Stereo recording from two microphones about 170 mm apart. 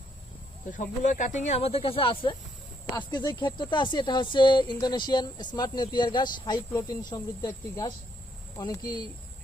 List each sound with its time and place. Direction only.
0.7 s speech: 50° left (ahead or behind); by 9.0 s 25° left (ahead or behind)